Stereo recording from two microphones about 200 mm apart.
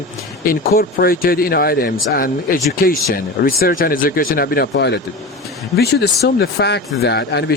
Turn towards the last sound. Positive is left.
turn(degrees=55)  # may be behind; listen again after turning